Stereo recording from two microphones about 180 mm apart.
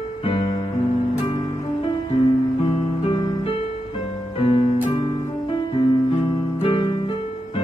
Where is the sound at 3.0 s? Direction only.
30° left (ahead or behind).